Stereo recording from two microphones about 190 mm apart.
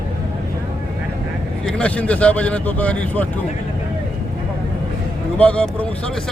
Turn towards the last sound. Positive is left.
turn(degrees=5)  # may be behind; listen again after turning